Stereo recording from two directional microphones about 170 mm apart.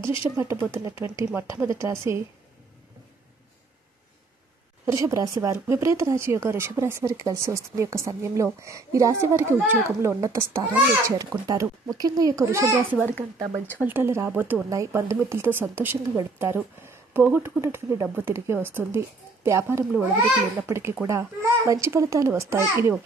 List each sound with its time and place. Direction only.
0.2 s speech: 15° right (ahead or behind)
4.9 s a child's voice: 20° right (ahead or behind)